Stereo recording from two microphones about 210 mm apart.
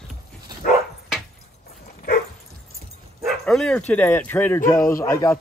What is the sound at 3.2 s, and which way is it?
Speech, centre (ahead or behind).